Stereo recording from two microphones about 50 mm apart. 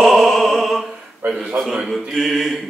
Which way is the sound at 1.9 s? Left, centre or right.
Centre.